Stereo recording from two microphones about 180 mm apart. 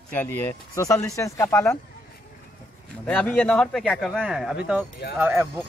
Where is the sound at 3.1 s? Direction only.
10° left (ahead or behind).